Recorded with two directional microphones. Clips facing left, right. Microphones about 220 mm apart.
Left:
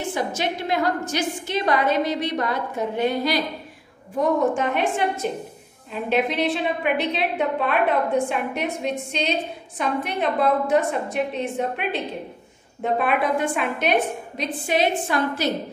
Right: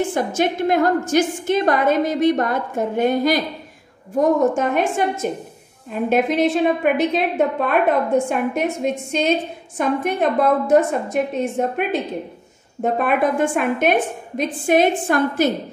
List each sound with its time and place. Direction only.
0.1 s a woman's voice: 50° right (ahead or behind)
4.6 s a woman's voice: 45° right (ahead or behind)